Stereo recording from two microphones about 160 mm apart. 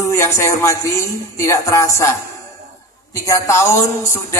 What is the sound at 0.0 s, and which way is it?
Music, 20° left (ahead or behind).